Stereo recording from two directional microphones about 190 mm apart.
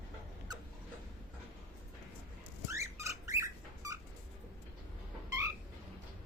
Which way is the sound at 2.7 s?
15° right (ahead or behind).